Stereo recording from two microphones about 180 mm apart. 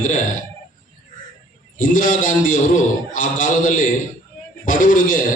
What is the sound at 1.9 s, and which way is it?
A man's voice, 45° left (ahead or behind).